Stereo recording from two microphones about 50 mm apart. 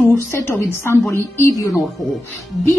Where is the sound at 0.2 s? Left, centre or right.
Left.